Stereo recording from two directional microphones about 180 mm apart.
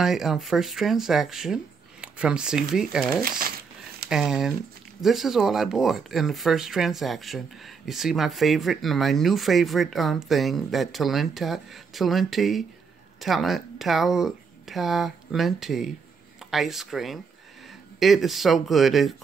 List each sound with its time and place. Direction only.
0.0 s speech: centre (ahead or behind)
3.2 s speech: 55° right (ahead or behind)
4.1 s speech: 5° right (ahead or behind)